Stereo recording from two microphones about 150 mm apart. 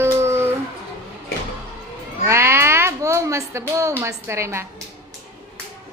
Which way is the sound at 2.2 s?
15° right (ahead or behind).